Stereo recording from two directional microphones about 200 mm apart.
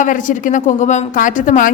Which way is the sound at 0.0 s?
40° left (ahead or behind).